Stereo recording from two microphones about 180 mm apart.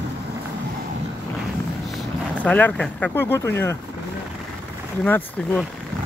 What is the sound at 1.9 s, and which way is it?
Speech, 5° left (ahead or behind).